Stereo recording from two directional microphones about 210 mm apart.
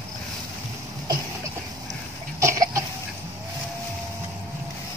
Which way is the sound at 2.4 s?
15° right (ahead or behind).